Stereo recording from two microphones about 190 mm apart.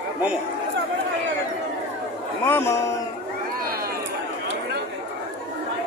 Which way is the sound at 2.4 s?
10° left (ahead or behind).